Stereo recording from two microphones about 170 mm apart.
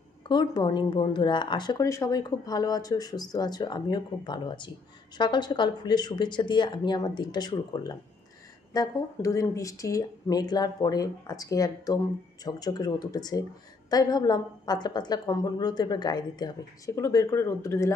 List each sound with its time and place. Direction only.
0.3 s a woman's voice: 25° left (ahead or behind)